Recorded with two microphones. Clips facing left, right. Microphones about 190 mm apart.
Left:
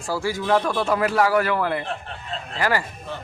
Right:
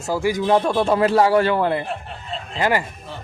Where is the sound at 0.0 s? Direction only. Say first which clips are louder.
Right 4 dB; 15° right (ahead or behind).